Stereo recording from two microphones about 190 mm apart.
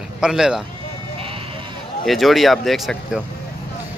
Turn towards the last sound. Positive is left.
turn(degrees=0)  # may be behind; listen again after turning